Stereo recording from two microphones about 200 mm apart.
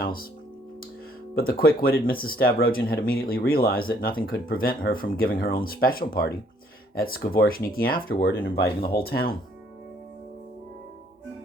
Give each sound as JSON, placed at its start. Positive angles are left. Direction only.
{"t": 0.0, "sound": "speech", "side_deg": 45}
{"t": 1.4, "sound": "speech", "side_deg": 50}